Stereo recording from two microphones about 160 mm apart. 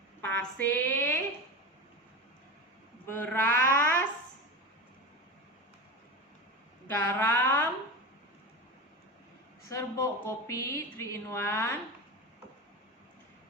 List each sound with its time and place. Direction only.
0.2 s a woman's voice: 10° left (ahead or behind)
3.1 s a sound: 10° left (ahead or behind)
6.8 s speech: 10° left (ahead or behind)
9.6 s speech: 20° left (ahead or behind)